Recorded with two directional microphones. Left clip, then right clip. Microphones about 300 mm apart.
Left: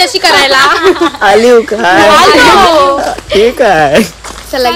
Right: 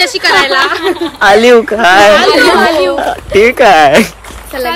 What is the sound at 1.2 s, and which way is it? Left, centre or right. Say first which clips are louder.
Speech: right 2 dB; centre.